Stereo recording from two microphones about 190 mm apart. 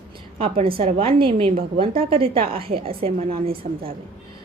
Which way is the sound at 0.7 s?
30° right (ahead or behind).